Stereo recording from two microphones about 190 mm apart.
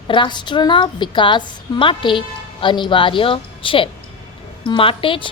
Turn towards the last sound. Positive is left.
turn(degrees=25)  # may be behind; listen again after turning